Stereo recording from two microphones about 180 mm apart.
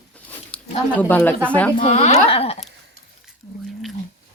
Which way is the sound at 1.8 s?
35° left (ahead or behind).